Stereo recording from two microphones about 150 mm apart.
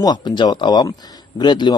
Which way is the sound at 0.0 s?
30° left (ahead or behind).